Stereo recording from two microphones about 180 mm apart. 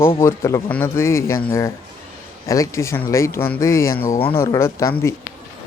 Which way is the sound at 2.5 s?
20° left (ahead or behind).